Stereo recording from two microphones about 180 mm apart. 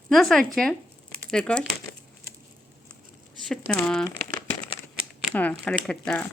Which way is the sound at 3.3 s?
5° left (ahead or behind).